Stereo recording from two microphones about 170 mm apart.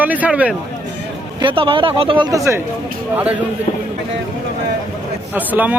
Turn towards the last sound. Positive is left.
turn(degrees=-10)  # may be behind; listen again after turning